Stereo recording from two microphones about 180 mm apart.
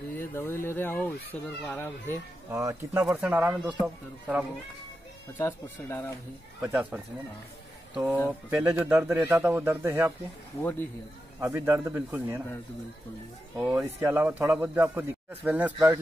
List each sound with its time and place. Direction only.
0.2 s speech: 10° left (ahead or behind)
2.5 s a man's voice: 15° right (ahead or behind)
5.4 s speech: 15° left (ahead or behind)
6.6 s speech: 10° right (ahead or behind)
10.6 s speech: 10° left (ahead or behind)
11.3 s speech: 15° right (ahead or behind)
13.6 s speech: 10° right (ahead or behind)